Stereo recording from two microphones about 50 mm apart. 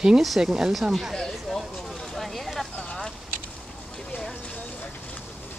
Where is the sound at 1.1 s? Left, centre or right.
Centre.